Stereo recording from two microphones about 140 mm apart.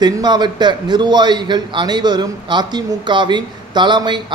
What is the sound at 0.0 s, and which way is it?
A man's voice, 30° right (ahead or behind).